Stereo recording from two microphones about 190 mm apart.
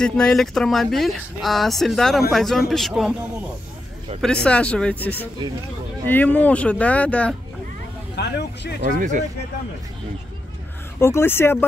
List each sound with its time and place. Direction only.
0.0 s speech: 5° left (ahead or behind)
4.2 s speech: 5° left (ahead or behind)
8.2 s speech: 60° left (ahead or behind)
8.8 s speech: 40° right (ahead or behind)
11.0 s speech: 15° left (ahead or behind)